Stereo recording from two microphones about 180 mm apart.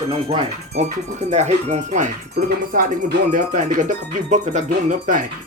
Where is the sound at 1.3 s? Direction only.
40° right (ahead or behind).